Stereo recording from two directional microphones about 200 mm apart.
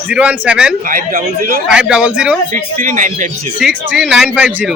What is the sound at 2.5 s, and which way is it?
Speech, 40° right (ahead or behind).